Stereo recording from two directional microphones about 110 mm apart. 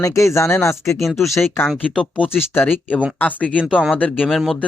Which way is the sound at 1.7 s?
10° left (ahead or behind).